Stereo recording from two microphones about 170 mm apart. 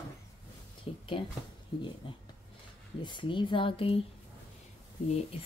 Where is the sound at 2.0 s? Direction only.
30° left (ahead or behind).